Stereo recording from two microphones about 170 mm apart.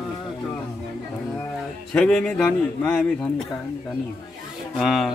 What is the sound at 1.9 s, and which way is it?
A man's voice, 5° left (ahead or behind).